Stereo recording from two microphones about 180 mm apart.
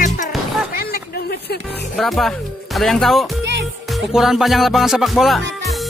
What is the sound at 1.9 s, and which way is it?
Speech, centre (ahead or behind).